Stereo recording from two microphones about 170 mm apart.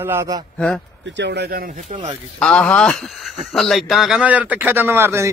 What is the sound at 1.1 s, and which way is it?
Speech, 90° right.